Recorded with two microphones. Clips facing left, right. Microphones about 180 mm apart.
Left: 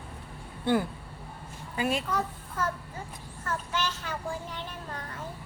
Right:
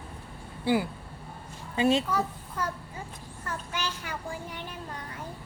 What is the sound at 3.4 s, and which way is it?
Child singing, 10° right (ahead or behind).